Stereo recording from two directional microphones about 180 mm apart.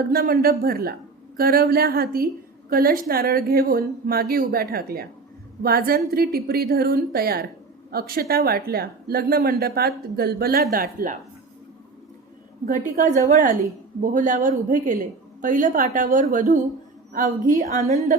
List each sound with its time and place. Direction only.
0.1 s a woman's voice: 55° right (ahead or behind)
12.6 s a woman's voice: 45° right (ahead or behind)